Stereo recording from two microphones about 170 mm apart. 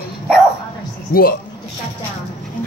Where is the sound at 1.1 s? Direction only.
60° left (ahead or behind).